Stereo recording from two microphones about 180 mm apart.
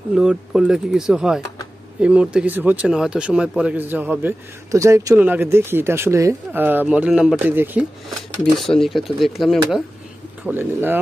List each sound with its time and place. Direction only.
0.1 s speech: 5° right (ahead or behind)
8.1 s speech: centre (ahead or behind)
10.4 s speech: 10° right (ahead or behind)